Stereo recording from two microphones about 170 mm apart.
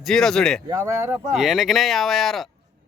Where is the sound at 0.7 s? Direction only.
15° right (ahead or behind).